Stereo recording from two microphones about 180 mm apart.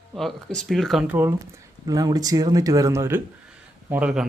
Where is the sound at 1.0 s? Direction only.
10° right (ahead or behind).